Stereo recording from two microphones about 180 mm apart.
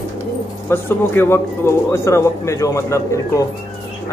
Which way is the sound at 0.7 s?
10° left (ahead or behind).